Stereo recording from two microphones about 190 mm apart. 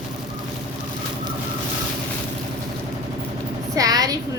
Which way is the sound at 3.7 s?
20° right (ahead or behind).